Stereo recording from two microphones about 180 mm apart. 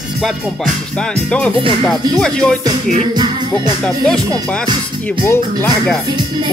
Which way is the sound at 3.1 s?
25° right (ahead or behind).